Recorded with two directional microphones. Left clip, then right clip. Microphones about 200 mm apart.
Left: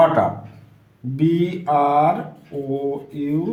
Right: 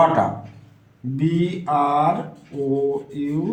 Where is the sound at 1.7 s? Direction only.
15° left (ahead or behind).